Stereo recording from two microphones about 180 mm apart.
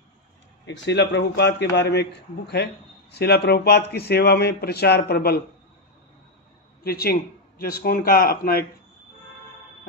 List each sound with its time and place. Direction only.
0.7 s a man's voice: 75° left (ahead or behind)
6.8 s a man's voice: 60° left (ahead or behind)